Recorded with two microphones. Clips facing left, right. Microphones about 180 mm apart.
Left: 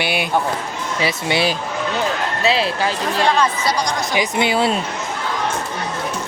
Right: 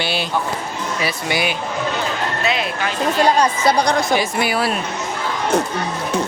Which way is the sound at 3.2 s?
40° right (ahead or behind).